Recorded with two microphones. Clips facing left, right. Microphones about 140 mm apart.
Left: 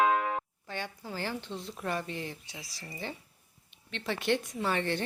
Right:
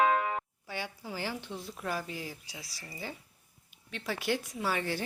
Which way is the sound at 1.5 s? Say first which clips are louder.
Left 1 dB; centre (ahead or behind).